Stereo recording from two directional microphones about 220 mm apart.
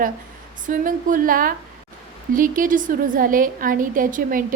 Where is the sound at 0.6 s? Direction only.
35° right (ahead or behind).